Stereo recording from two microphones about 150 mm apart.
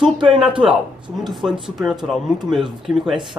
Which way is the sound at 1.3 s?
Centre (ahead or behind).